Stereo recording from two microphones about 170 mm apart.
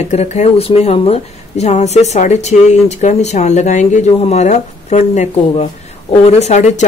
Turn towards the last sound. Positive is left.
turn(degrees=45)  # may be behind; listen again after turning